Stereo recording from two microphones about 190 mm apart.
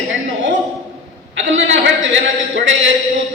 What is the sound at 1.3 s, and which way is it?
A man's voice, 85° right.